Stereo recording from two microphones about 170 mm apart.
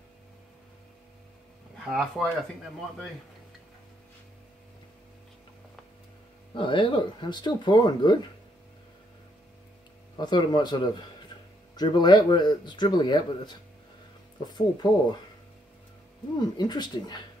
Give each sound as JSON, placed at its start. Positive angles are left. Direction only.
{"t": 1.9, "sound": "speech", "side_deg": 0}
{"t": 6.5, "sound": "speech", "side_deg": 30}
{"t": 10.1, "sound": "speech", "side_deg": 25}
{"t": 16.3, "sound": "speech", "side_deg": 25}